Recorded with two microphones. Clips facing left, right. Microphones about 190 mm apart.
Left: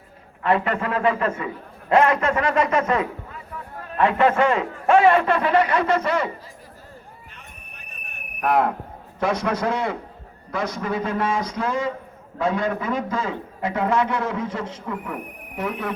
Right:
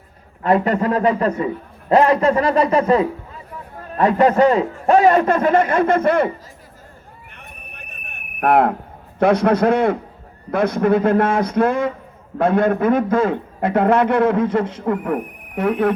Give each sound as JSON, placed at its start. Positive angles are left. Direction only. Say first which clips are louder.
{"t": 0.4, "sound": "a man's voice", "louder": "right 5 dB", "side_deg": -40}
{"t": 7.8, "sound": "a sound", "louder": "right 3 dB", "side_deg": -60}
{"t": 9.1, "sound": "a man's voice", "louder": "right 8 dB", "side_deg": -60}